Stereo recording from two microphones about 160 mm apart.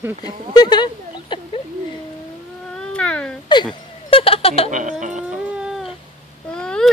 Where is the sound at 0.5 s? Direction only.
25° left (ahead or behind).